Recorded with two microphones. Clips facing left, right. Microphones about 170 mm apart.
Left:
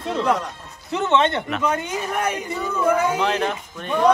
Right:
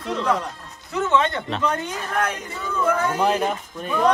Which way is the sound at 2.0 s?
10° left (ahead or behind).